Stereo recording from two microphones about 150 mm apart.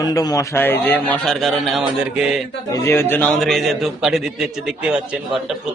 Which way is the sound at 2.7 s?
20° left (ahead or behind).